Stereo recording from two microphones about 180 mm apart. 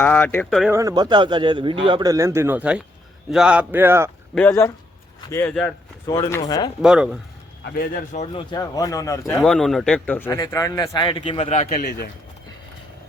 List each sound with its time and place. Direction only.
0.0 s a man's voice: 10° left (ahead or behind)
0.7 s a man's voice: 20° right (ahead or behind)
4.4 s a man's voice: 15° left (ahead or behind)
6.8 s speech: 5° right (ahead or behind)
7.6 s speech: 50° left (ahead or behind)
8.3 s speech: 25° left (ahead or behind)
9.4 s a man's voice: centre (ahead or behind); by 11.7 s 35° left (ahead or behind)
11.7 s speech: 65° left (ahead or behind)